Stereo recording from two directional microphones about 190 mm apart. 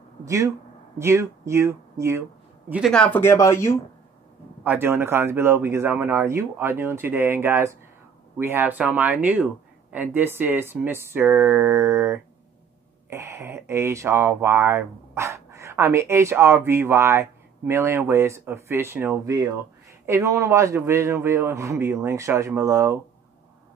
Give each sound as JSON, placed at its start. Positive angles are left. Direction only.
{"t": 0.2, "sound": "speech", "side_deg": -15}
{"t": 2.7, "sound": "speech", "side_deg": 0}
{"t": 4.6, "sound": "speech", "side_deg": -10}